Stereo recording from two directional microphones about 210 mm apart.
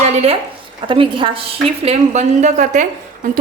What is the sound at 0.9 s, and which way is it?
A woman's voice, 25° right (ahead or behind).